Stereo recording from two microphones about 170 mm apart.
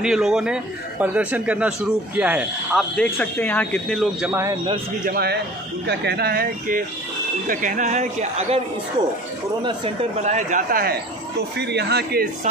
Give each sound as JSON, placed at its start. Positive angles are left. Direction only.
{"t": 0.0, "sound": "a man's voice", "side_deg": -5}
{"t": 3.0, "sound": "speech", "side_deg": 10}
{"t": 4.3, "sound": "a man's voice", "side_deg": -15}
{"t": 5.0, "sound": "a man's voice", "side_deg": -65}
{"t": 7.4, "sound": "speech", "side_deg": -50}
{"t": 10.2, "sound": "speech", "side_deg": -45}
{"t": 11.5, "sound": "a man's voice", "side_deg": -80}